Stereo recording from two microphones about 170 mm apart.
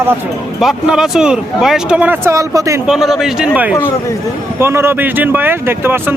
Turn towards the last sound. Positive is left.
turn(degrees=-15)  # may be behind; listen again after turning